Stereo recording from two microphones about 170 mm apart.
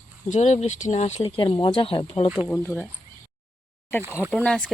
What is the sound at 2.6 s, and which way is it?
Speech, 5° left (ahead or behind).